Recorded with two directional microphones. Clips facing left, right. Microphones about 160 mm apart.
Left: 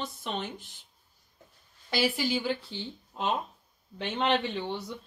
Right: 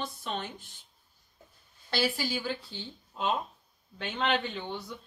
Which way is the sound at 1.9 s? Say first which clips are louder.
Left 2 dB; 15° left (ahead or behind).